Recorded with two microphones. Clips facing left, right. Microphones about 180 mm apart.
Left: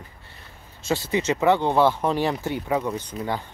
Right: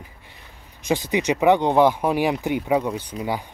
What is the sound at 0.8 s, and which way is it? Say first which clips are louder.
Speech: right 2 dB; 15° right (ahead or behind).